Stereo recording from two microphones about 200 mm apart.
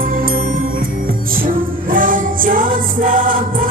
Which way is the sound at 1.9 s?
45° right (ahead or behind).